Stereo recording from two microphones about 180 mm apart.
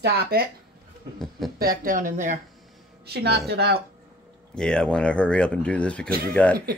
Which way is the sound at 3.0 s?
65° right (ahead or behind).